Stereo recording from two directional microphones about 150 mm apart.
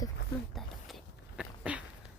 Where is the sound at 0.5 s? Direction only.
Centre (ahead or behind).